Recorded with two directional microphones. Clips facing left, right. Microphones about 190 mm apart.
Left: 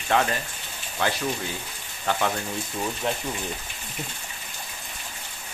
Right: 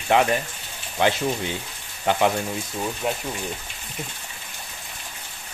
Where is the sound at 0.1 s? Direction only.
15° right (ahead or behind).